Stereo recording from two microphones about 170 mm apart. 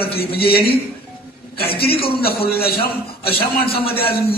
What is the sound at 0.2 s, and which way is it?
A man's voice, 65° left (ahead or behind).